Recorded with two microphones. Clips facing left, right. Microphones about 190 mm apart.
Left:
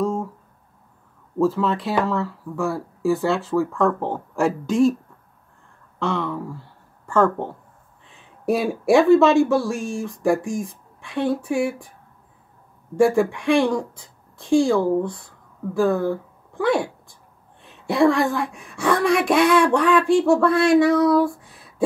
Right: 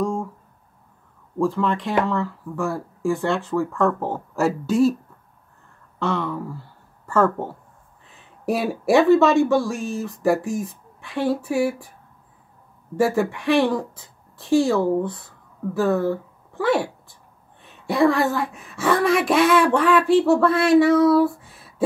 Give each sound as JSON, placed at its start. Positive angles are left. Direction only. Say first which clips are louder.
{"t": 0.0, "sound": "a sound", "louder": "left 1 dB", "side_deg": 5}
{"t": 1.4, "sound": "speech", "louder": "left 1 dB", "side_deg": 5}
{"t": 5.9, "sound": "speech", "louder": "even", "side_deg": 0}
{"t": 12.9, "sound": "speech", "louder": "left 3 dB", "side_deg": -5}